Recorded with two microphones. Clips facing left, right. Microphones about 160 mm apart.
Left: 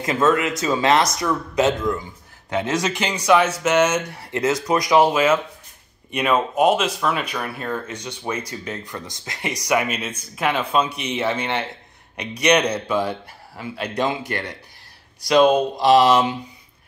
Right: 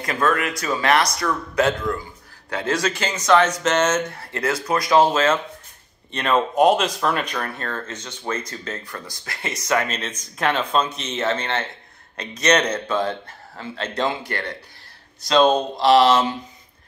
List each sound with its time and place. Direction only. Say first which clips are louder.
0.0 s speech: left 3 dB; 20° left (ahead or behind)
15.5 s speech: left 1 dB; 15° left (ahead or behind)